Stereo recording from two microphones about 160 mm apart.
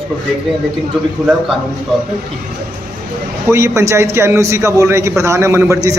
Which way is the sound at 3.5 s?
15° right (ahead or behind).